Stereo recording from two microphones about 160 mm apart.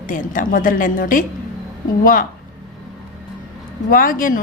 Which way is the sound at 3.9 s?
60° left (ahead or behind).